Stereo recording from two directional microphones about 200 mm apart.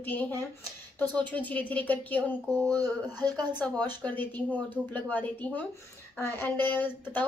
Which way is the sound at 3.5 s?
10° left (ahead or behind).